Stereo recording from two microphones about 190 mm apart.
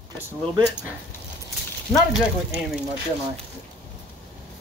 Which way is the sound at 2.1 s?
Centre (ahead or behind).